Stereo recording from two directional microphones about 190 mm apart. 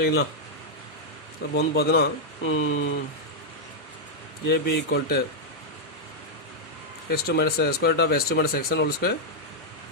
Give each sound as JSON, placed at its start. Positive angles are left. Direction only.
{"t": 0.0, "sound": "speech", "side_deg": 60}
{"t": 1.5, "sound": "speech", "side_deg": 60}
{"t": 4.4, "sound": "speech", "side_deg": 60}
{"t": 7.1, "sound": "speech", "side_deg": 55}